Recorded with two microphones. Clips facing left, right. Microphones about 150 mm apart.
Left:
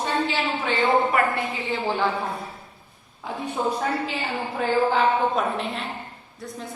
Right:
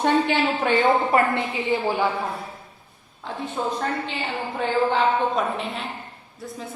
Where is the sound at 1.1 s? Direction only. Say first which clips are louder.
Right 2 dB; 30° right (ahead or behind).